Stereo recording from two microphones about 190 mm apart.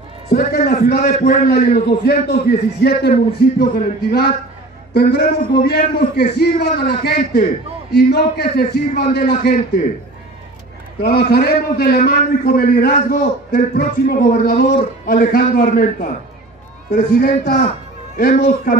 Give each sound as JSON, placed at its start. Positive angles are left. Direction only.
{"t": 0.3, "sound": "a man's voice", "side_deg": 50}
{"t": 11.0, "sound": "a man's voice", "side_deg": 55}